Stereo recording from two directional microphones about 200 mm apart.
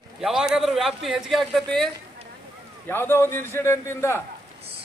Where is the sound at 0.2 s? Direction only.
5° right (ahead or behind); by 4.2 s 15° left (ahead or behind).